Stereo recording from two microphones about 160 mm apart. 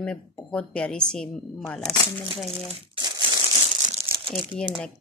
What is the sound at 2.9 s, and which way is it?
Crumpling, 30° right (ahead or behind).